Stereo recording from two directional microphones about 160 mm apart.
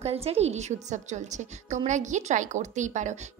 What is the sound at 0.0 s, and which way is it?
A woman's voice, 40° right (ahead or behind).